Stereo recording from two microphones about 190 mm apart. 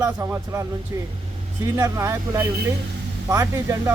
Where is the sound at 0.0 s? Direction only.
15° right (ahead or behind).